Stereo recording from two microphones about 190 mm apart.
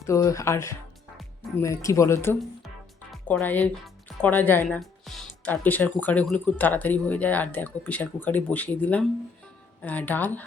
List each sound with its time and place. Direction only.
0.0 s speech: 15° left (ahead or behind)